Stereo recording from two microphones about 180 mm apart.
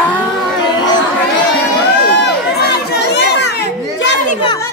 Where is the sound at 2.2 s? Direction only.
70° left (ahead or behind).